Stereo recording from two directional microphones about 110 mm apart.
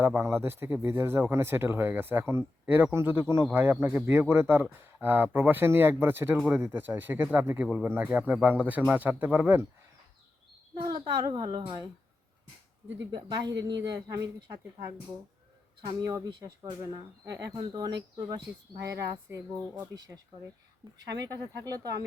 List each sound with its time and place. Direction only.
0.0 s speech: 20° right (ahead or behind)
10.8 s speech: 35° right (ahead or behind)
13.1 s speech: 40° right (ahead or behind)
16.0 s speech: 40° right (ahead or behind)
19.3 s speech: 25° right (ahead or behind)
21.7 s speech: 35° right (ahead or behind)